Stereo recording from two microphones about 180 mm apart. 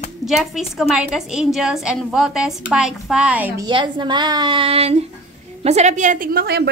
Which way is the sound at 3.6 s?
25° right (ahead or behind).